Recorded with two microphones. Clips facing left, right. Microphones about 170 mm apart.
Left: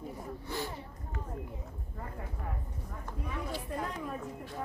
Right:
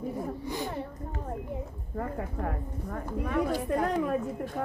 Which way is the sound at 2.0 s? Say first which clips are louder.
Right 11 dB; 70° right (ahead or behind).